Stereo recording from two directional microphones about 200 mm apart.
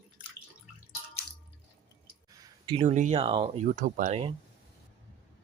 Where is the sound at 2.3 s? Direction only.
20° right (ahead or behind).